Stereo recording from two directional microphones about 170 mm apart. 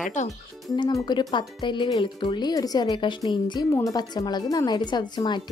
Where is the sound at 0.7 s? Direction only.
25° left (ahead or behind).